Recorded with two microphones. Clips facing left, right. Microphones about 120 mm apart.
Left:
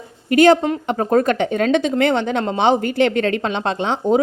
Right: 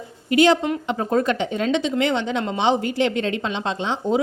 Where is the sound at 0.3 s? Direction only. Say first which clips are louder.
Left 4 dB; 50° left (ahead or behind).